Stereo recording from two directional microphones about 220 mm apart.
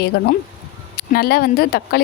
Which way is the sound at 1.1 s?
45° left (ahead or behind).